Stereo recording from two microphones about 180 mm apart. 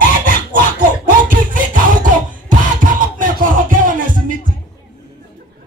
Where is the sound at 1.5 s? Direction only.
50° right (ahead or behind).